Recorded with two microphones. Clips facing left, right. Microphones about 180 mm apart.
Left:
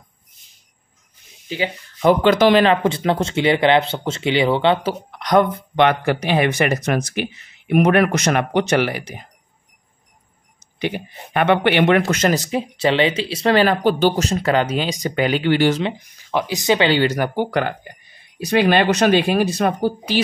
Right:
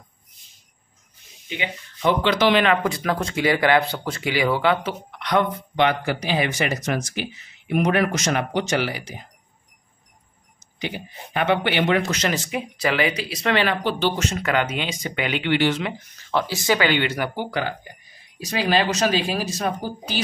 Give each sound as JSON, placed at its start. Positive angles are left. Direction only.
{"t": 2.0, "sound": "speech", "side_deg": 45}
{"t": 2.6, "sound": "speech", "side_deg": 30}
{"t": 5.2, "sound": "speech", "side_deg": 40}
{"t": 5.8, "sound": "speech", "side_deg": 60}
{"t": 10.8, "sound": "speech", "side_deg": 60}
{"t": 16.0, "sound": "speech", "side_deg": 10}